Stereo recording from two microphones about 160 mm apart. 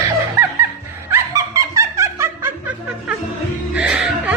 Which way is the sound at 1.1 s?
20° right (ahead or behind).